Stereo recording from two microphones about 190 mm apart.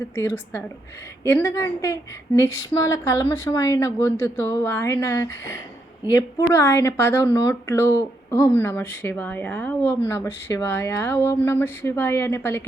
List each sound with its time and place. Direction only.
0.2 s speech: 15° left (ahead or behind)